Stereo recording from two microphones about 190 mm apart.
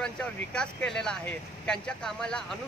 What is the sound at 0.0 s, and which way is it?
Speech, 5° left (ahead or behind).